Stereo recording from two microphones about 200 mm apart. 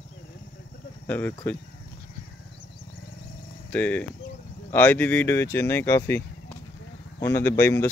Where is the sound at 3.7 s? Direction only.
5° left (ahead or behind).